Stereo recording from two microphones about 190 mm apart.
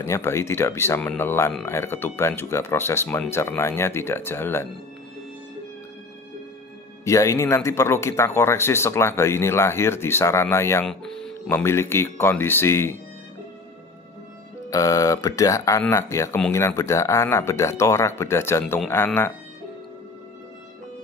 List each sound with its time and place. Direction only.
0.0 s speech: 15° left (ahead or behind)
7.1 s speech: 15° left (ahead or behind)
10.9 s speech: 5° left (ahead or behind)
14.7 s speech: 15° left (ahead or behind)